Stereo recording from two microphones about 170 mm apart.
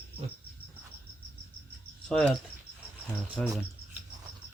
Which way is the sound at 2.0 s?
5° left (ahead or behind).